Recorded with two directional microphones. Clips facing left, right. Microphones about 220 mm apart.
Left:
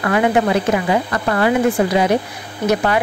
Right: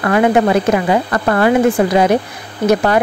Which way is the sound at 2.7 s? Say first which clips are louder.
Right 4 dB; 45° right (ahead or behind).